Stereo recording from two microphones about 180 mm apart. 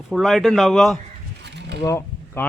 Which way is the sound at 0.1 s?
Centre (ahead or behind).